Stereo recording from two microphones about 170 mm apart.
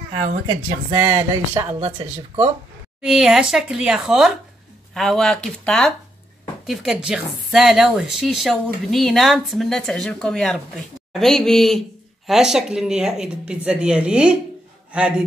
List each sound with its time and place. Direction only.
0.5 s speech: 25° right (ahead or behind)
1.8 s speech: 35° right (ahead or behind)
3.0 s a man's voice: 5° right (ahead or behind)